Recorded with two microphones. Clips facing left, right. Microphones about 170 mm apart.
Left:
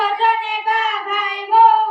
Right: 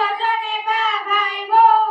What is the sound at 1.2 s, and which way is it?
Child singing, 20° left (ahead or behind).